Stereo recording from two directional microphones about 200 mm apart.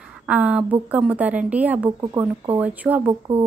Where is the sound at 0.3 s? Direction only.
5° right (ahead or behind).